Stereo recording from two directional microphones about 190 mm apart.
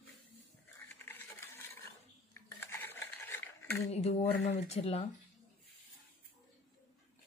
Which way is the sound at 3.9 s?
35° left (ahead or behind).